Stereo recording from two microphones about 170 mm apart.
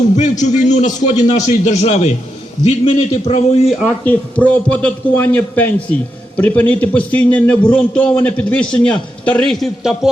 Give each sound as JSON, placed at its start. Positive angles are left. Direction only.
{"t": 0.2, "sound": "a man's voice", "side_deg": 45}
{"t": 4.0, "sound": "a man's voice", "side_deg": 10}